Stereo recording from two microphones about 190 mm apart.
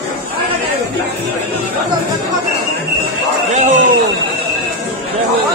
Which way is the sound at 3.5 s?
40° right (ahead or behind).